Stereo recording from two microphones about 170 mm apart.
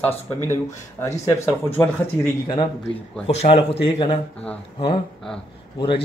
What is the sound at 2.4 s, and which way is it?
Speech, 25° left (ahead or behind).